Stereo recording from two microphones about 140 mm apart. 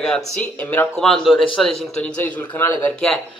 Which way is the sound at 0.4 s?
10° left (ahead or behind).